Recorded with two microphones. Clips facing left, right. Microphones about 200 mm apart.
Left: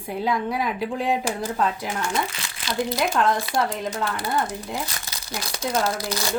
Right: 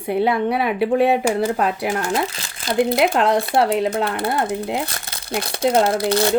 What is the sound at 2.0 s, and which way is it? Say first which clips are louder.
Speech: right 5 dB; 35° right (ahead or behind).